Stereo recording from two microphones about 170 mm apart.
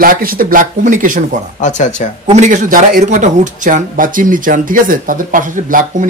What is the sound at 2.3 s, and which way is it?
Speech, 45° right (ahead or behind).